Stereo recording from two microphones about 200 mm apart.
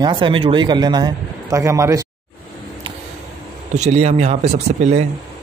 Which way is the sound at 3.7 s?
35° right (ahead or behind).